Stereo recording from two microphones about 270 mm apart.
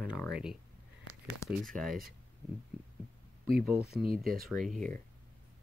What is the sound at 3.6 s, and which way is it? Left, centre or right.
Speech, right.